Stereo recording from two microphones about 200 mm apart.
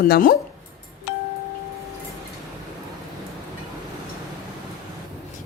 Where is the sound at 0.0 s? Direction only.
45° left (ahead or behind).